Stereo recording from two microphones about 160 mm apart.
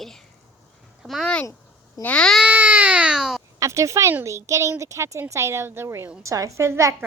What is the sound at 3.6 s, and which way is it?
Speech, 20° right (ahead or behind).